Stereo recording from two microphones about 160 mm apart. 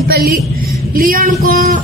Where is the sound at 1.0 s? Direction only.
60° right (ahead or behind).